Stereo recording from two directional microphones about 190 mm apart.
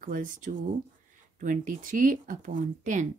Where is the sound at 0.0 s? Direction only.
45° right (ahead or behind).